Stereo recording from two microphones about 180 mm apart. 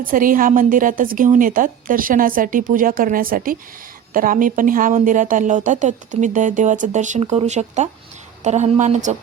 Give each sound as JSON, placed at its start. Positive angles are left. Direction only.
{"t": 0.1, "sound": "a woman's voice", "side_deg": -50}